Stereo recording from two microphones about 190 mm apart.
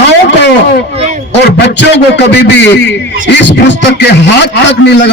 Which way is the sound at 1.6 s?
65° left (ahead or behind).